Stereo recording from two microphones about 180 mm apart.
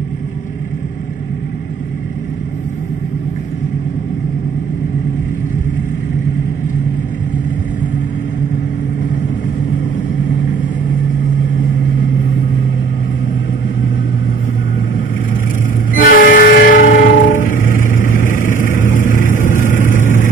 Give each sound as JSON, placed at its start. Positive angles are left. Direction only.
{"t": 15.9, "sound": "train", "side_deg": 50}